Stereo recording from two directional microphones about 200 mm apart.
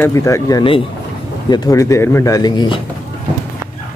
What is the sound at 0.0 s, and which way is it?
Speech, 15° left (ahead or behind).